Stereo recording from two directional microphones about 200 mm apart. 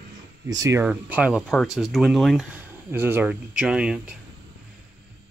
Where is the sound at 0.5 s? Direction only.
15° right (ahead or behind); by 2.4 s centre (ahead or behind).